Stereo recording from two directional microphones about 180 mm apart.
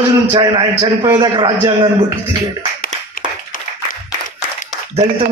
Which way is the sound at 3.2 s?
50° left (ahead or behind).